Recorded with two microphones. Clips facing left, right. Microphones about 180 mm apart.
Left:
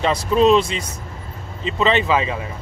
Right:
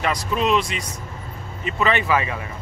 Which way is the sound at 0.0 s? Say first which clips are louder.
Left 7 dB; 30° left (ahead or behind).